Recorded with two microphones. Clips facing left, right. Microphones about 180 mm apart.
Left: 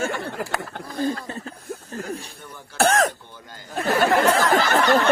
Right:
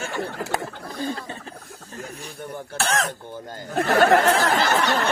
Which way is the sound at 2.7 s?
50° left (ahead or behind).